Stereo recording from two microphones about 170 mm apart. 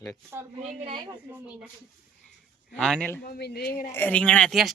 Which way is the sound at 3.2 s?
70° left (ahead or behind).